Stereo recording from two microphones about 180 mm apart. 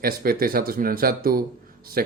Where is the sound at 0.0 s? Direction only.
55° right (ahead or behind).